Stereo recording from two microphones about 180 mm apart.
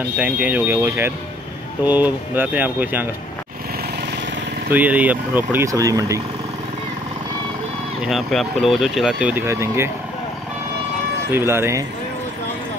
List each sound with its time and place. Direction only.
0.2 s speech: 10° right (ahead or behind)
4.6 s speech: 10° right (ahead or behind)
8.0 s speech: centre (ahead or behind)
11.3 s speech: 15° right (ahead or behind)